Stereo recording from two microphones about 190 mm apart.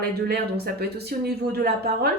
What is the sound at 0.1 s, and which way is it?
Speech, 55° right (ahead or behind).